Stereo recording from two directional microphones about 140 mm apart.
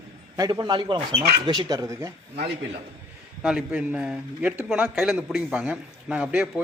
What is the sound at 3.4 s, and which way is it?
A man's voice, 5° right (ahead or behind).